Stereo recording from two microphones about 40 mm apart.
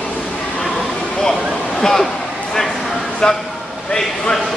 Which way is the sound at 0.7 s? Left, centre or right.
Centre.